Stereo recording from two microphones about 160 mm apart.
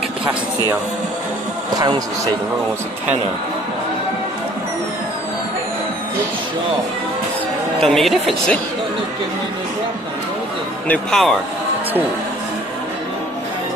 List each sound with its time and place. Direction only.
1.8 s a man's voice: 25° right (ahead or behind)
7.8 s speech: centre (ahead or behind)
10.9 s speech: 5° left (ahead or behind)